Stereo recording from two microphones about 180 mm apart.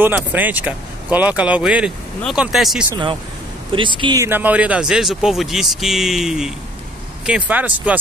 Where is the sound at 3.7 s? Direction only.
25° right (ahead or behind).